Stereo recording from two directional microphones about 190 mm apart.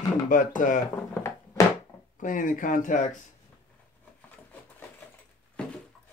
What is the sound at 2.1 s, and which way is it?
Speech, 45° left (ahead or behind).